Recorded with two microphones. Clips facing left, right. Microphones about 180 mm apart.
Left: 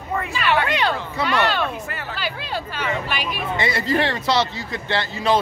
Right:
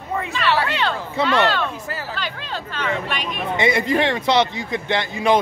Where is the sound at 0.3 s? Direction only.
10° left (ahead or behind).